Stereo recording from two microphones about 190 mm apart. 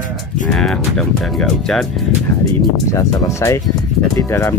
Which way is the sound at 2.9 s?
15° left (ahead or behind).